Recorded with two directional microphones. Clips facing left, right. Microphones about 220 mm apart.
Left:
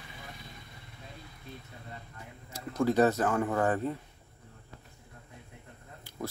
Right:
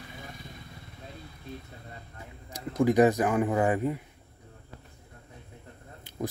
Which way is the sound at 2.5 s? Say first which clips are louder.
Right 4 dB; 15° right (ahead or behind).